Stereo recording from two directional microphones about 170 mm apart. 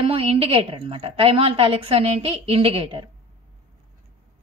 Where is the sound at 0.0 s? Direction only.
35° right (ahead or behind).